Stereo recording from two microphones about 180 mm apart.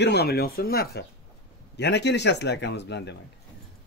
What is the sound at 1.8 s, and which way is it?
Speech, 70° left (ahead or behind).